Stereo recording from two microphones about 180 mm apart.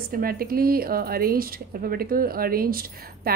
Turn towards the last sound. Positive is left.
turn(degrees=-55)  # may be behind; listen again after turning